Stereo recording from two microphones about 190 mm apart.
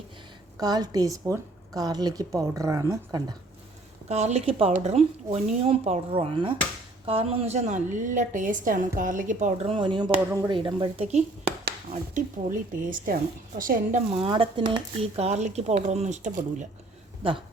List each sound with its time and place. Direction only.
0.6 s a woman's voice: 20° right (ahead or behind)
4.1 s speech: 35° right (ahead or behind)
9.6 s a woman's voice: 25° right (ahead or behind)
12.1 s a woman's voice: 45° right (ahead or behind)
14.2 s speech: 30° right (ahead or behind)
17.2 s a woman's voice: 30° right (ahead or behind)